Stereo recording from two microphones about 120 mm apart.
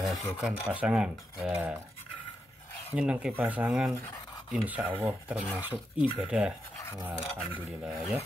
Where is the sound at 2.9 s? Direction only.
10° right (ahead or behind).